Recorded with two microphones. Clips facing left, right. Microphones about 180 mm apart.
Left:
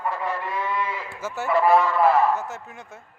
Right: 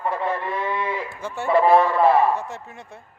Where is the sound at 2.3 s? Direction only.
Centre (ahead or behind).